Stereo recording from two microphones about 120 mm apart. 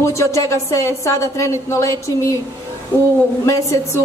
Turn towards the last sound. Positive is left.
turn(degrees=25)  # may be behind; listen again after turning